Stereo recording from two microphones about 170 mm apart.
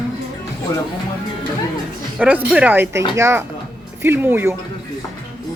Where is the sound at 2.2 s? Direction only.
10° right (ahead or behind).